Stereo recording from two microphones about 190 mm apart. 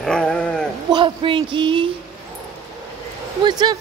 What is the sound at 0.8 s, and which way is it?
Speech, 25° right (ahead or behind).